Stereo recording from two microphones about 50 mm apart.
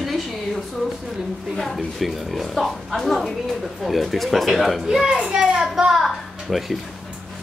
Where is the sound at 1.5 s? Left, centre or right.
Centre.